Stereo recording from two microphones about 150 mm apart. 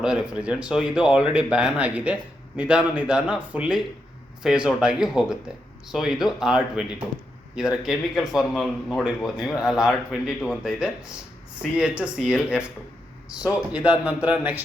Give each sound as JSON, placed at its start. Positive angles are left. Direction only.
{"t": 0.0, "sound": "a man's voice", "side_deg": -5}